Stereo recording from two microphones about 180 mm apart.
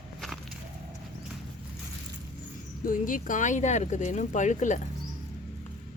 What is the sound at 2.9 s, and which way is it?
Speech, 50° left (ahead or behind).